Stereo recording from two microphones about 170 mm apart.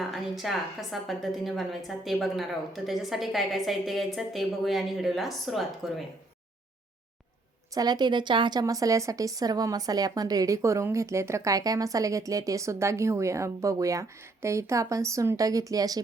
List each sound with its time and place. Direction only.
0.0 s a woman's voice: centre (ahead or behind)
7.7 s a woman's voice: 25° right (ahead or behind)